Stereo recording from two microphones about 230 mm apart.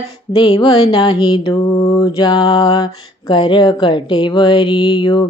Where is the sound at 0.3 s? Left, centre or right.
Left.